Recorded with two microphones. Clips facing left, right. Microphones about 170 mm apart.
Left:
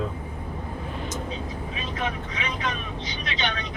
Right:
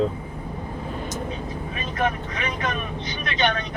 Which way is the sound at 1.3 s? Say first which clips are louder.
Right 2 dB; 55° right (ahead or behind).